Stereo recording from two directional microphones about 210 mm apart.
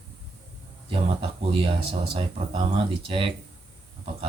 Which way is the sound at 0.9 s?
25° right (ahead or behind).